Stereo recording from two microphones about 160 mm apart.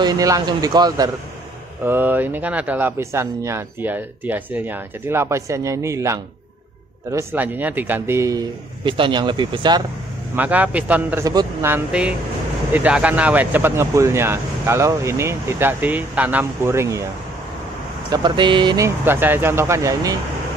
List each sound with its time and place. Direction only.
0.0 s speech: 25° right (ahead or behind)
1.9 s speech: 10° right (ahead or behind); by 9.8 s 30° right (ahead or behind)
10.3 s speech: 10° right (ahead or behind)
18.1 s speech: 30° right (ahead or behind)
19.0 s speech: 15° right (ahead or behind)